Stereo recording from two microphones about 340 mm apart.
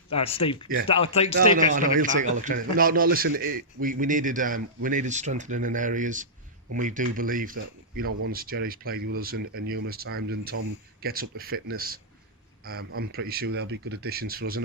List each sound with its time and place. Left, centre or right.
0.1 s speech: centre
1.4 s a man's voice: right